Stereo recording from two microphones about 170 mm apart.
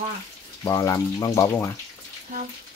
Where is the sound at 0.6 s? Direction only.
20° left (ahead or behind).